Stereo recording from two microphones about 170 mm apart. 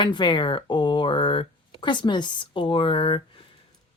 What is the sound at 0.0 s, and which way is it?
Speech, 25° left (ahead or behind).